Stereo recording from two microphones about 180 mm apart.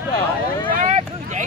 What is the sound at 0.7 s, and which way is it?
Vehicle, 45° right (ahead or behind).